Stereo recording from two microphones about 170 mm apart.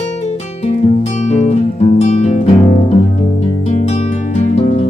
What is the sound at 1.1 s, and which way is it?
Guitar, 40° left (ahead or behind).